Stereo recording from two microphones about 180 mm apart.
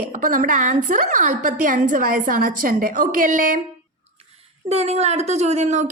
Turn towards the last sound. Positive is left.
turn(degrees=-40)  # may be behind; listen again after turning